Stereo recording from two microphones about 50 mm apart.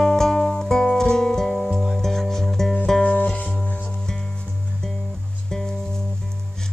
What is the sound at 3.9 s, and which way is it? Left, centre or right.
Music, centre.